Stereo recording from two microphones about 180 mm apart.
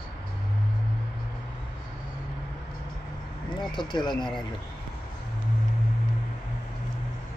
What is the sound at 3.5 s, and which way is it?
Speech, 25° left (ahead or behind).